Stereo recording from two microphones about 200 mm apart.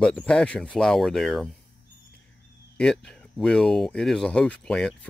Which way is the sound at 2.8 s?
5° left (ahead or behind).